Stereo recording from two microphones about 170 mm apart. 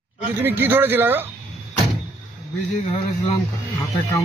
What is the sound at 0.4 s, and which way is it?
Speech, 10° right (ahead or behind).